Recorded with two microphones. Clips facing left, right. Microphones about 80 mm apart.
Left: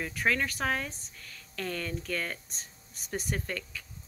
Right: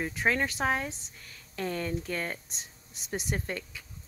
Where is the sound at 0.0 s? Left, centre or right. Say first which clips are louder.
Right 1 dB; right.